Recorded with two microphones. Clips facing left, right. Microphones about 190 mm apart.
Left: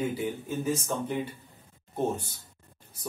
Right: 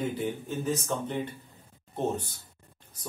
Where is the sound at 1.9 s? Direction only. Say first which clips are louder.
Left 1 dB; 10° left (ahead or behind).